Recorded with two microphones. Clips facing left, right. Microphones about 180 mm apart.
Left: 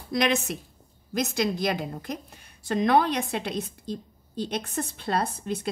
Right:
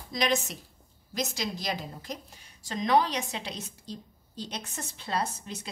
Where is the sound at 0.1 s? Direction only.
60° left (ahead or behind).